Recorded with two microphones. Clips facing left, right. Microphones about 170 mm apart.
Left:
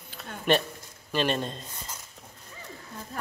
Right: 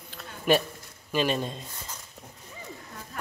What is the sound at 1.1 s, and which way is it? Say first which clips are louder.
Speech: right 1 dB; 5° right (ahead or behind).